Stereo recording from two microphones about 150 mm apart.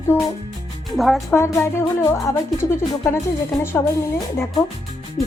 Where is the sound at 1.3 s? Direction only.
20° left (ahead or behind).